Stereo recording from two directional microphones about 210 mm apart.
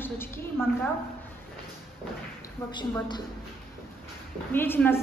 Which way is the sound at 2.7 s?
20° left (ahead or behind).